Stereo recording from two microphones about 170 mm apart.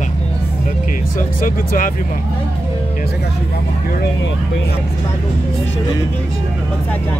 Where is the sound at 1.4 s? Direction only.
55° left (ahead or behind).